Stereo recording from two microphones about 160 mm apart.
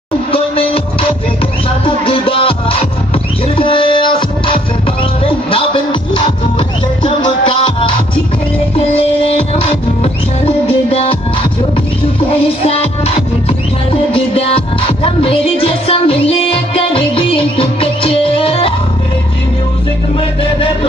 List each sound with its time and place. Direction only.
0.3 s music: 35° left (ahead or behind)
2.0 s music: 35° left (ahead or behind)
12.3 s music: 35° left (ahead or behind)
14.1 s music: 35° left (ahead or behind)